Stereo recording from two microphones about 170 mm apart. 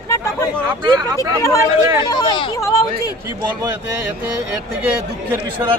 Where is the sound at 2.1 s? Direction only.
25° left (ahead or behind).